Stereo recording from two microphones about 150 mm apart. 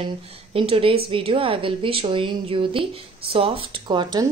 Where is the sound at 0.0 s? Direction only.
40° right (ahead or behind).